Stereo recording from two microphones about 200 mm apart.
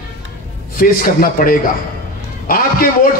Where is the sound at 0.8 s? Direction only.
45° left (ahead or behind).